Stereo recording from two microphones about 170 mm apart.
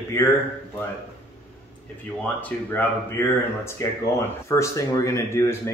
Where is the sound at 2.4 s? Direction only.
10° left (ahead or behind).